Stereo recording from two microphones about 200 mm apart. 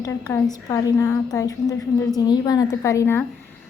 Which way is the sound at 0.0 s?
15° left (ahead or behind).